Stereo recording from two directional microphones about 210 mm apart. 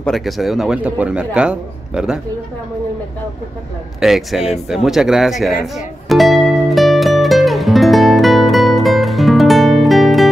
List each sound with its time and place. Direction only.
0.0 s a man's voice: centre (ahead or behind)
4.0 s a man's voice: centre (ahead or behind)
6.0 s music: centre (ahead or behind)